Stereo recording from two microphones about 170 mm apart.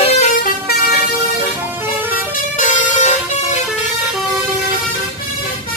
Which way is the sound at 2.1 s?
45° left (ahead or behind).